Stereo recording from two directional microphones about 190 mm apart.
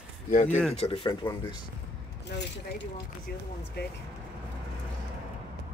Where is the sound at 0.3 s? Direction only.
40° left (ahead or behind).